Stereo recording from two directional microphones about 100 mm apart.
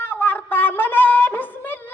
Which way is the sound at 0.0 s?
20° left (ahead or behind).